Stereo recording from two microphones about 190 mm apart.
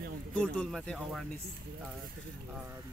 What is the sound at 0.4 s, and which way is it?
Speech, centre (ahead or behind).